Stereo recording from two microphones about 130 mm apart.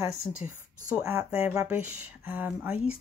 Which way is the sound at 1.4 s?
10° right (ahead or behind).